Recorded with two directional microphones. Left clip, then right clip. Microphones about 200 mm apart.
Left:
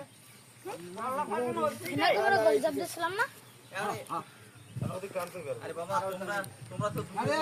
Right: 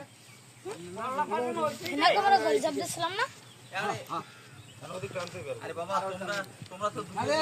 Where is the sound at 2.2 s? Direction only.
55° left (ahead or behind).